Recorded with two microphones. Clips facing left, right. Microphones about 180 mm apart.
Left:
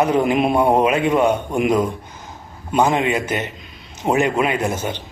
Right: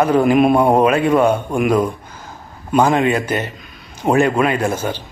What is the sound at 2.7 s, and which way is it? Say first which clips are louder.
Speech: right 3 dB; 20° left (ahead or behind).